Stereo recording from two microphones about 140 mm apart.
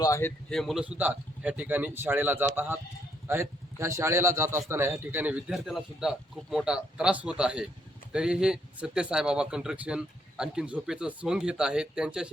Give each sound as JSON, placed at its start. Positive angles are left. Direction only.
{"t": 0.0, "sound": "speech", "side_deg": 20}
{"t": 0.5, "sound": "a man's voice", "side_deg": 0}